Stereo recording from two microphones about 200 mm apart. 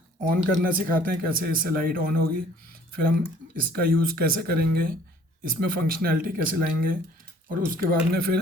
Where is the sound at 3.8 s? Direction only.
50° right (ahead or behind).